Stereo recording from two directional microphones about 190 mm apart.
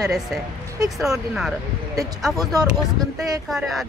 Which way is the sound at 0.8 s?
Centre (ahead or behind).